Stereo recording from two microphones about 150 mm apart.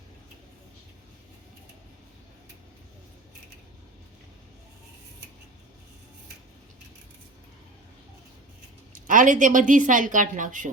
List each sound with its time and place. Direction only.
8.9 s a woman's voice: 60° right (ahead or behind)